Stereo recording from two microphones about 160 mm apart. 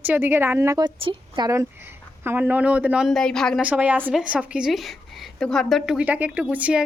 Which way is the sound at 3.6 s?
10° right (ahead or behind).